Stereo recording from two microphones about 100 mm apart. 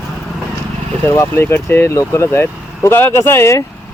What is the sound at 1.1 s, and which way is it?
Speech, 25° left (ahead or behind).